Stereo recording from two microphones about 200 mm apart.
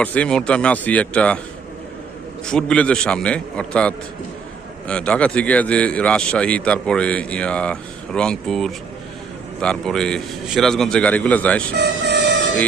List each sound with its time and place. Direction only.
0.0 s speech: 5° left (ahead or behind)
2.5 s speech: 5° left (ahead or behind)
11.7 s train: 55° right (ahead or behind)